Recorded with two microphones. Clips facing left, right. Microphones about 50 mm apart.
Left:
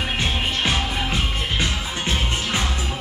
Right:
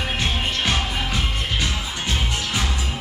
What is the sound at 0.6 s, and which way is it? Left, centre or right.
Music, centre.